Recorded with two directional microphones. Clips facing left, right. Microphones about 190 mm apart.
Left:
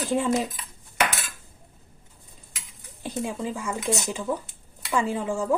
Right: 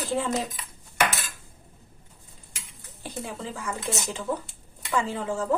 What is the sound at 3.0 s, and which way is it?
Speech, 15° left (ahead or behind).